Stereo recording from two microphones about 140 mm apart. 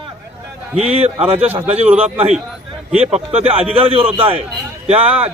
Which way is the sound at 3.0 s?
50° right (ahead or behind).